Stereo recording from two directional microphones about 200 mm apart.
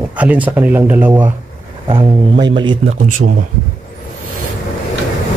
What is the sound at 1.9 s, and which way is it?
Speech, 25° right (ahead or behind).